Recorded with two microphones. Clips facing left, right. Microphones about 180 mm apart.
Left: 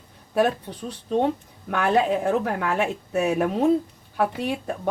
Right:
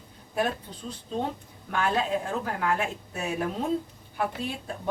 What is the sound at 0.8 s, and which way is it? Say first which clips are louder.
Speech: left 8 dB; 70° left (ahead or behind).